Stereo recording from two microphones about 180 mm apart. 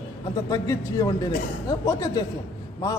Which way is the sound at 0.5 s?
20° left (ahead or behind).